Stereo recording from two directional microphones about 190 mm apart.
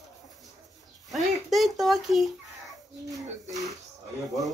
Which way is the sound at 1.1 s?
Centre (ahead or behind).